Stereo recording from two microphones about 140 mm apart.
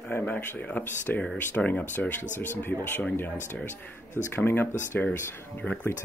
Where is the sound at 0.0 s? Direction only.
15° left (ahead or behind).